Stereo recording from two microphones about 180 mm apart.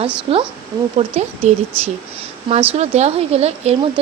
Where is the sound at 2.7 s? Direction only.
35° right (ahead or behind).